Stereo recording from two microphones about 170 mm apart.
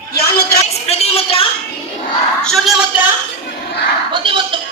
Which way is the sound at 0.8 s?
35° left (ahead or behind).